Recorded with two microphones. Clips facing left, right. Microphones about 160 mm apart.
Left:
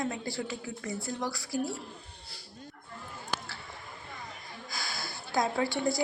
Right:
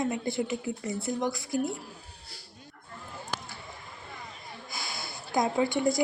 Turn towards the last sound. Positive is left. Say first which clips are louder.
# right 3 dB
turn(degrees=-20)  # may be behind; listen again after turning